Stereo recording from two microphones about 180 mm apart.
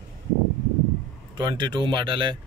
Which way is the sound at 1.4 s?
25° right (ahead or behind).